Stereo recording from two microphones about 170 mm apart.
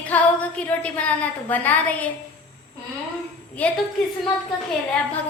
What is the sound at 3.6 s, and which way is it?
Speech, 10° left (ahead or behind).